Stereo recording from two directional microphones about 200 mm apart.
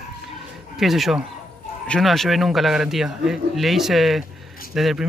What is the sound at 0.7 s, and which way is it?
Speech, centre (ahead or behind).